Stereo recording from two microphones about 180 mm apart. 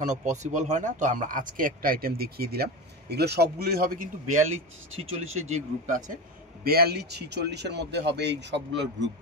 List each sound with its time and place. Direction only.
0.0 s speech: 40° right (ahead or behind)
6.6 s a man's voice: 60° right (ahead or behind); by 9.1 s 75° right (ahead or behind)